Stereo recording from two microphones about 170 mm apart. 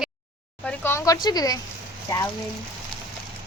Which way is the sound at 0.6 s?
10° left (ahead or behind).